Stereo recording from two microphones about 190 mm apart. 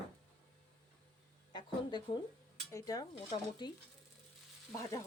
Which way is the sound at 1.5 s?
25° left (ahead or behind).